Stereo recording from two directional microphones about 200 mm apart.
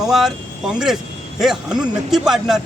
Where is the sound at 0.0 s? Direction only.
Centre (ahead or behind).